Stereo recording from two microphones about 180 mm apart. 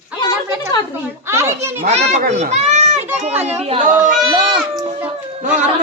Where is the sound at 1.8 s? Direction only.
35° right (ahead or behind).